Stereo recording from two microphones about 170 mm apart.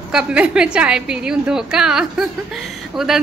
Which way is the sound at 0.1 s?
5° right (ahead or behind).